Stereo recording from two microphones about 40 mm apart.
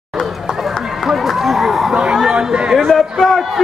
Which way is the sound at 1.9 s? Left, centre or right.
Right.